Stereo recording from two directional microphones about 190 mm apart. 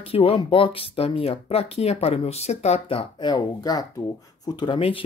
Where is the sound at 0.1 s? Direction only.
30° left (ahead or behind).